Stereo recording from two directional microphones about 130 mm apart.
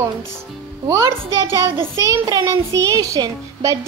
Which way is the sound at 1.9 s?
20° right (ahead or behind).